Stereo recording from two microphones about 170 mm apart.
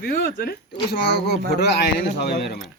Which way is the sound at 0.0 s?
65° left (ahead or behind).